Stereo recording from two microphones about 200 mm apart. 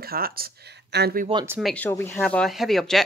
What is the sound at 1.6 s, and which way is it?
Speech, 5° left (ahead or behind).